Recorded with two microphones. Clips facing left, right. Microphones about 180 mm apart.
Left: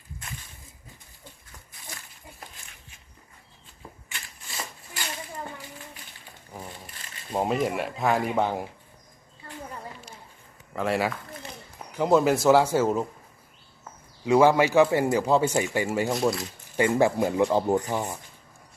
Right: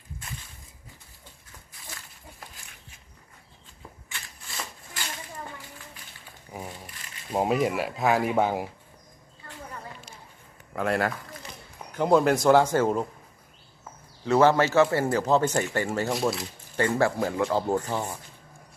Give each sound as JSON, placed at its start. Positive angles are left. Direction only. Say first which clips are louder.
{"t": 7.3, "sound": "speech", "louder": "right 1 dB", "side_deg": 0}
{"t": 10.8, "sound": "speech", "louder": "even", "side_deg": 5}
{"t": 14.3, "sound": "speech", "louder": "left 1 dB", "side_deg": 10}
{"t": 16.0, "sound": "speech", "louder": "left 2 dB", "side_deg": 0}
{"t": 16.7, "sound": "speech", "louder": "left 2 dB", "side_deg": 15}